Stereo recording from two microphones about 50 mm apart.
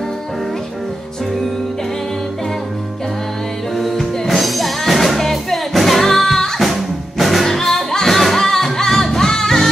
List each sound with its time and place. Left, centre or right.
3.7 s music: centre